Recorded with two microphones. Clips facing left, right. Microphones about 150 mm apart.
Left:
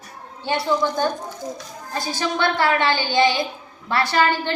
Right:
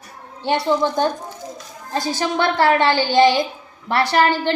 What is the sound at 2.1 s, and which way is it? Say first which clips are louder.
A woman's voice: right 2 dB; 40° right (ahead or behind).